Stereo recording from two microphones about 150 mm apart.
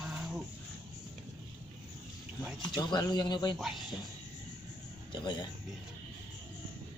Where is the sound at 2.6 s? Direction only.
30° left (ahead or behind).